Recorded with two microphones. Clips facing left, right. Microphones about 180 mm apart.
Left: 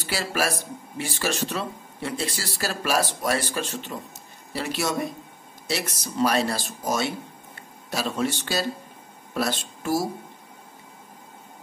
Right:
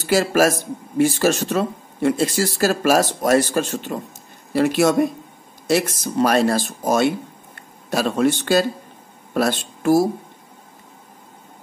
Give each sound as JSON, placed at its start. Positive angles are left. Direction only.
{"t": 0.0, "sound": "speech", "side_deg": -45}